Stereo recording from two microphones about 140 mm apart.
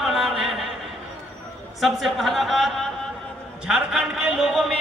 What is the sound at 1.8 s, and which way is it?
A man's voice, centre (ahead or behind).